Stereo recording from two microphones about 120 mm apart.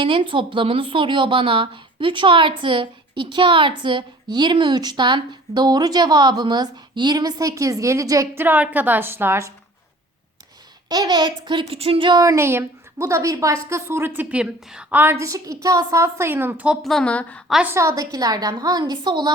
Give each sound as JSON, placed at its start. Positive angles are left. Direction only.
{"t": 0.0, "sound": "speech", "side_deg": -45}
{"t": 8.4, "sound": "a woman's voice", "side_deg": -15}
{"t": 10.8, "sound": "speech", "side_deg": -35}
{"t": 11.6, "sound": "a sound", "side_deg": -50}
{"t": 12.2, "sound": "a woman's voice", "side_deg": -25}
{"t": 16.8, "sound": "a woman's voice", "side_deg": 5}
{"t": 17.5, "sound": "a woman's voice", "side_deg": -10}
{"t": 17.7, "sound": "speech", "side_deg": -25}